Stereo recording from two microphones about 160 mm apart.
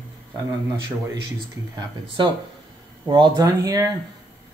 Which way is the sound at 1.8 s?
30° right (ahead or behind).